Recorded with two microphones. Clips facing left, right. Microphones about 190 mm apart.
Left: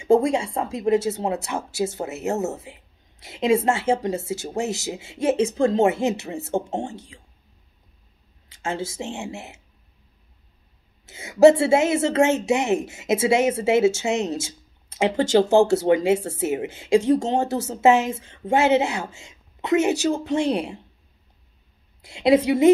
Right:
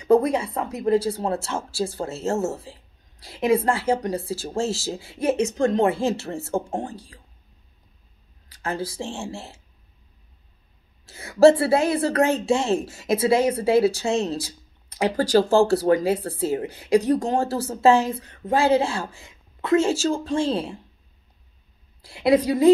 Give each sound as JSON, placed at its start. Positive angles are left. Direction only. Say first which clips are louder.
{"t": 0.0, "sound": "speech", "louder": "even", "side_deg": 25}
{"t": 8.5, "sound": "speech", "louder": "even", "side_deg": 25}
{"t": 11.1, "sound": "speech", "louder": "left 1 dB", "side_deg": 20}
{"t": 22.0, "sound": "speech", "louder": "left 1 dB", "side_deg": 25}